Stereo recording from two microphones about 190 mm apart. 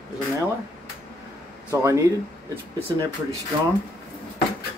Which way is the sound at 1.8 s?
15° right (ahead or behind).